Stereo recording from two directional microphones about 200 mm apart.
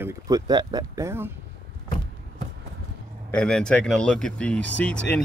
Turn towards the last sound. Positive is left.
turn(degrees=5)  # may be behind; listen again after turning